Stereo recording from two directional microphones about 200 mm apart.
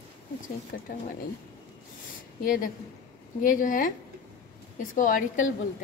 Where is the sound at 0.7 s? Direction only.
45° left (ahead or behind).